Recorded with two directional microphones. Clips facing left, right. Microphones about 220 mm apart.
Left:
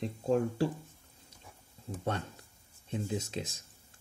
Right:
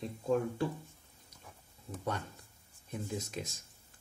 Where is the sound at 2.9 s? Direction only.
30° left (ahead or behind).